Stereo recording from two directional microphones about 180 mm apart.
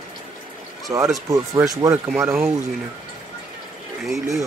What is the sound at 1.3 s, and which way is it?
Speech, 20° right (ahead or behind).